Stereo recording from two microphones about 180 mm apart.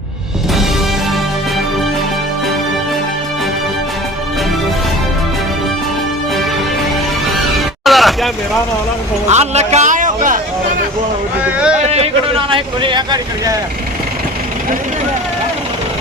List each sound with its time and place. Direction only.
7.9 s vehicle: centre (ahead or behind)
9.3 s a man's voice: 40° right (ahead or behind)
11.4 s speech: 5° right (ahead or behind)
12.5 s speech: 30° right (ahead or behind)